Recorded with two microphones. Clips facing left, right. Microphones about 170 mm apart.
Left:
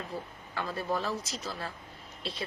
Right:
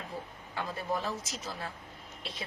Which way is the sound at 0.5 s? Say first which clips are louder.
Left 2 dB; 15° right (ahead or behind).